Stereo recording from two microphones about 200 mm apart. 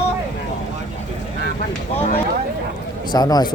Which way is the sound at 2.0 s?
30° left (ahead or behind).